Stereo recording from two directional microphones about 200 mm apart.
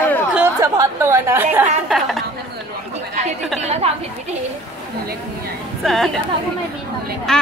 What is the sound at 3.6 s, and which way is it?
Speech, 35° right (ahead or behind).